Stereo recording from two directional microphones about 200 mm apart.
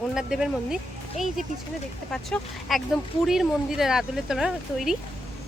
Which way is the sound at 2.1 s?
Centre (ahead or behind).